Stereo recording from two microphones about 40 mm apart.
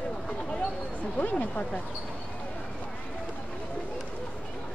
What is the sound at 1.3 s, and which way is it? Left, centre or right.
Speech, left.